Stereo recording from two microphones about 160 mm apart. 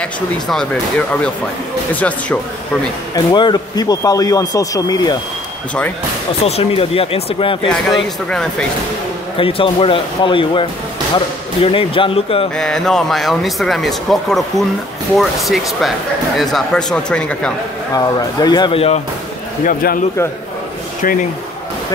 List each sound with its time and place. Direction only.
0.0 s speech: 5° left (ahead or behind)
2.0 s speech: 10° left (ahead or behind)
3.3 s speech: 25° left (ahead or behind)
6.4 s speech: 40° left (ahead or behind)
7.6 s speech: 5° left (ahead or behind)
9.4 s speech: 35° left (ahead or behind)
12.5 s speech: 5° left (ahead or behind)
17.9 s speech: 25° left (ahead or behind)
19.6 s a man's voice: 65° left (ahead or behind)
21.0 s speech: 55° left (ahead or behind)